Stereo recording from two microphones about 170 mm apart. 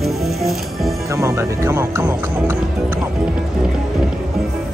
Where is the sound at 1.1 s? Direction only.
15° right (ahead or behind).